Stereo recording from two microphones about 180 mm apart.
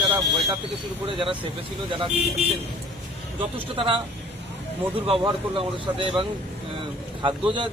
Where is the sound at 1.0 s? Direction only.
30° right (ahead or behind).